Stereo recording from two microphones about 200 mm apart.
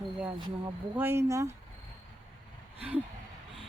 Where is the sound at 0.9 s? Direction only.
10° right (ahead or behind).